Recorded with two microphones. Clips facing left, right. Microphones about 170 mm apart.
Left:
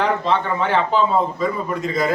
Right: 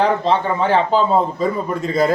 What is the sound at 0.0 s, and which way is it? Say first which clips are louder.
A man's voice: right 3 dB; 35° right (ahead or behind).